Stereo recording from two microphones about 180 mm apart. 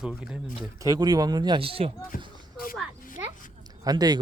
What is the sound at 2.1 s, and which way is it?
Speech, 50° left (ahead or behind).